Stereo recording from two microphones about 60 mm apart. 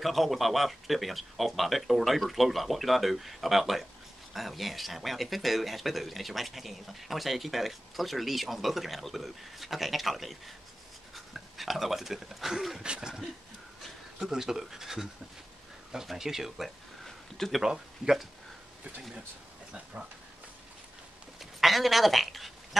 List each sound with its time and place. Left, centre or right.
0.0 s speech: centre
19.7 s speech: centre
21.4 s speech: centre